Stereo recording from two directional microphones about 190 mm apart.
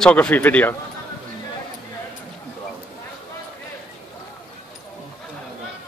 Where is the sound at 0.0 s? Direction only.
5° left (ahead or behind).